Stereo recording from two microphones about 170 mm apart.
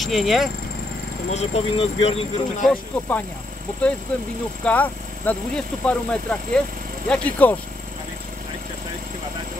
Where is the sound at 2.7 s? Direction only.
10° left (ahead or behind).